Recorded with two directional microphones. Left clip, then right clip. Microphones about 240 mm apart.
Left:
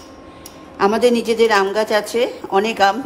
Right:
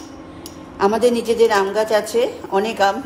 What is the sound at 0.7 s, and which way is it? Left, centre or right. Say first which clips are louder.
A woman's voice: left 1 dB; left.